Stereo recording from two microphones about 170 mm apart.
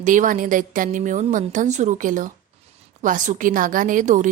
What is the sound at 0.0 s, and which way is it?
A woman's voice, 50° right (ahead or behind).